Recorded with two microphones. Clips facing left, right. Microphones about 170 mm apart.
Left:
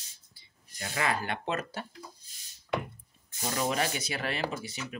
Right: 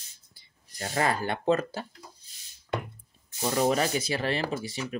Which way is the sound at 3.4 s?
40° right (ahead or behind).